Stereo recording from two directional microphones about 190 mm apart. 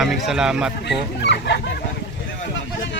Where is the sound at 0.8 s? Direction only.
65° left (ahead or behind).